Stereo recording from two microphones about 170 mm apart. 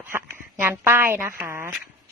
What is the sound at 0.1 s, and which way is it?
A woman's voice, 10° right (ahead or behind).